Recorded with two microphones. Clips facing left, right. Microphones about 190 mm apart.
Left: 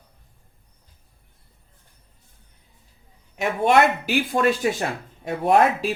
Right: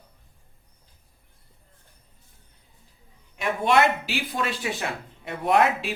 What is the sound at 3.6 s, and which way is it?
Speech, 50° left (ahead or behind).